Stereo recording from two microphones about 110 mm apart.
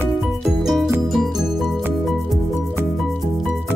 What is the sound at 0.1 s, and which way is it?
Music, centre (ahead or behind).